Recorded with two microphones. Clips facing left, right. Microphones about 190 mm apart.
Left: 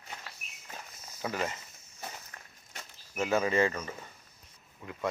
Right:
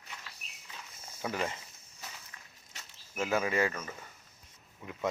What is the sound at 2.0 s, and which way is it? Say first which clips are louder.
Walk: left 6 dB; 55° left (ahead or behind).